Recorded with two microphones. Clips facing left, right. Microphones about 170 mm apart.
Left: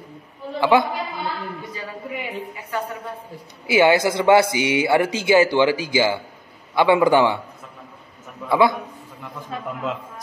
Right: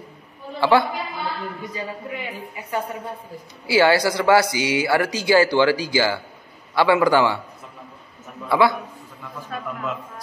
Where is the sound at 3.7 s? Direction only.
20° left (ahead or behind).